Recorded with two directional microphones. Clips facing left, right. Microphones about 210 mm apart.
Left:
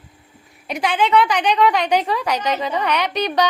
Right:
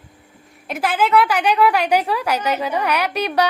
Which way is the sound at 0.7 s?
5° right (ahead or behind).